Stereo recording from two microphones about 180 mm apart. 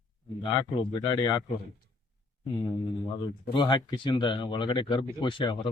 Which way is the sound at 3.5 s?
25° left (ahead or behind).